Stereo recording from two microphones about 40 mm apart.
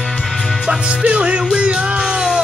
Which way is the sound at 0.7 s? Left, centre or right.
Right.